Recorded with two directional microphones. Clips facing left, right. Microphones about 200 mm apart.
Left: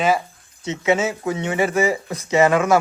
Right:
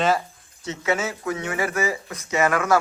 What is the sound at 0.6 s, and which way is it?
Speech, 20° left (ahead or behind).